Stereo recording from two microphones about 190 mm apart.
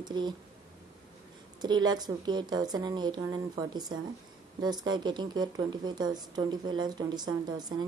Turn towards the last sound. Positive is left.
turn(degrees=-20)  # may be behind; listen again after turning